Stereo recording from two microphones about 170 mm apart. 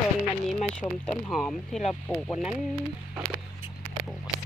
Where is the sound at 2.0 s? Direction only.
5° left (ahead or behind).